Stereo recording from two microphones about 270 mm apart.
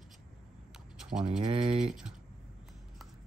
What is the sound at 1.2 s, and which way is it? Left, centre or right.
Speech, centre.